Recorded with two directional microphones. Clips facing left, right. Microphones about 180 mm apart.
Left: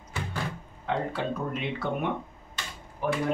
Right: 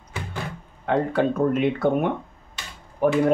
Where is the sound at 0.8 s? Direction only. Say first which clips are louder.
Right 8 dB; 55° right (ahead or behind).